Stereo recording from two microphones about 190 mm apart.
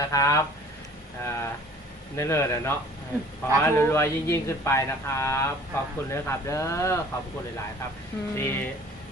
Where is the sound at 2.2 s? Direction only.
15° left (ahead or behind).